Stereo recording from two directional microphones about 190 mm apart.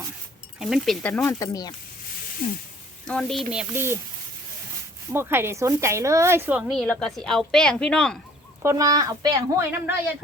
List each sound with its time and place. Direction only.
0.6 s speech: centre (ahead or behind); by 1.7 s 20° left (ahead or behind)
3.1 s speech: 5° left (ahead or behind)
3.5 s speech: 10° right (ahead or behind)
5.1 s speech: 10° right (ahead or behind); by 8.2 s 5° left (ahead or behind)
8.6 s speech: 20° right (ahead or behind)